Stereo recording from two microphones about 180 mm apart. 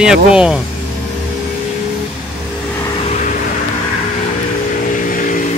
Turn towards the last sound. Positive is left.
turn(degrees=45)  # may be behind; listen again after turning